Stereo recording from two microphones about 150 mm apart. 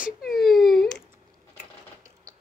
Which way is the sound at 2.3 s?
20° right (ahead or behind).